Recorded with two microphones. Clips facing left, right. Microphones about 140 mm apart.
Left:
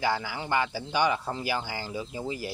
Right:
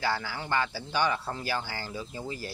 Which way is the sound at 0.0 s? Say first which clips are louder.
Left 2 dB; 15° left (ahead or behind).